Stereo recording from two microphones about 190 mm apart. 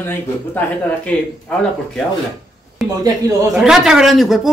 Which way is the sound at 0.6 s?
10° left (ahead or behind).